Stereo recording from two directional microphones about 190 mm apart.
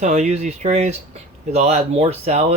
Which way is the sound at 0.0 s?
35° right (ahead or behind).